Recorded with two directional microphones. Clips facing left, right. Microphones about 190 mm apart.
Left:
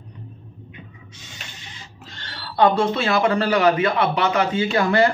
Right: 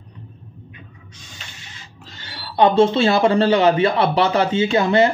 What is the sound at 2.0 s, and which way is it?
Speech, 5° right (ahead or behind).